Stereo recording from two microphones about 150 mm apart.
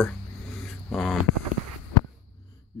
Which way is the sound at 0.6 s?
Centre (ahead or behind).